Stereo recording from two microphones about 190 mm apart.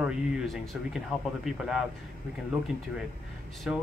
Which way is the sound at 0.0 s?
5° right (ahead or behind).